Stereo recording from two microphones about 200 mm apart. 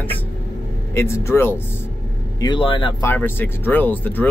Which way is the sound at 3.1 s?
10° left (ahead or behind).